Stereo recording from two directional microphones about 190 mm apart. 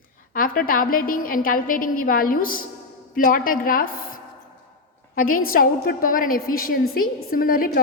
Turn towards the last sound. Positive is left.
turn(degrees=50)  # may be behind; listen again after turning